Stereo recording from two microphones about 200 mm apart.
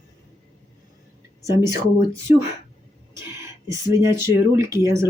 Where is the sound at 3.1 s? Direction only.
15° right (ahead or behind).